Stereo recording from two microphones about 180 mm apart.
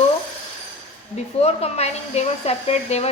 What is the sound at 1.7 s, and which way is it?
Speech, 35° left (ahead or behind).